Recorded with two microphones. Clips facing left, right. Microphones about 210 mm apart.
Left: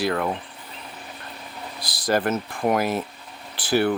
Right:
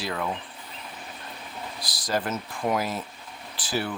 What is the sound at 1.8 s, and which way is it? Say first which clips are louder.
Speech: left 6 dB; 60° left (ahead or behind).